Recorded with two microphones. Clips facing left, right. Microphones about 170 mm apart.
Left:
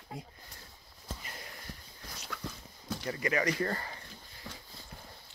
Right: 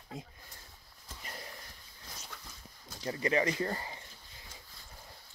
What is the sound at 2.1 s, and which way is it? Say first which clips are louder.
Dog: left 9 dB; 65° left (ahead or behind).